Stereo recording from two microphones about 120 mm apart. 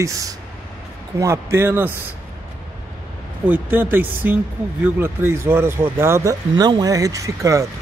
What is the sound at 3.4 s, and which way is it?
A man's voice, 15° right (ahead or behind).